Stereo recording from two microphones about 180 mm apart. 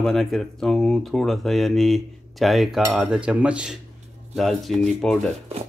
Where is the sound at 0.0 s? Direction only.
Centre (ahead or behind).